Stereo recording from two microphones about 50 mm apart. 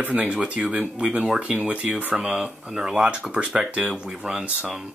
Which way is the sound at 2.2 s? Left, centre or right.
Centre.